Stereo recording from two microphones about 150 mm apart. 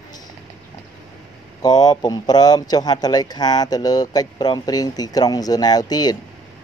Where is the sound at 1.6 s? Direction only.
25° left (ahead or behind).